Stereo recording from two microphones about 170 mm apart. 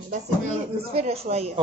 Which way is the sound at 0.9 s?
35° right (ahead or behind).